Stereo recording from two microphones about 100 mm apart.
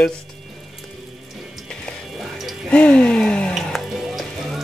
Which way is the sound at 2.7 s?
10° left (ahead or behind).